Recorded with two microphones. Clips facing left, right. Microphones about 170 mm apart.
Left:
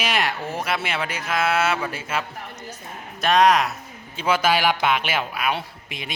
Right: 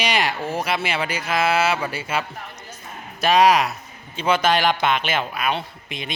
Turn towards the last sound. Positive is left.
turn(degrees=5)  # may be behind; listen again after turning